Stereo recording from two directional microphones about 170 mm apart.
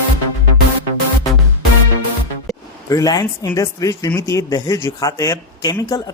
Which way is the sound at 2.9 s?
20° left (ahead or behind).